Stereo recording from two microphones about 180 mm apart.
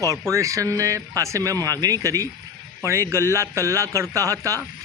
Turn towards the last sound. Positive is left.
turn(degrees=-15)  # may be behind; listen again after turning